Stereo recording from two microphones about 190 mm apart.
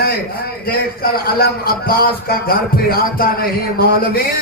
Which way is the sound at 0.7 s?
50° left (ahead or behind).